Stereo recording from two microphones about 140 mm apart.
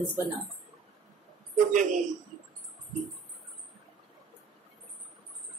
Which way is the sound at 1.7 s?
65° right (ahead or behind).